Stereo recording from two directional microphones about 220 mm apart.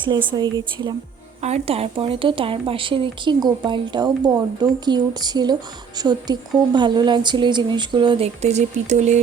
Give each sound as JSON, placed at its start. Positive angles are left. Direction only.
{"t": 0.3, "sound": "speech", "side_deg": -20}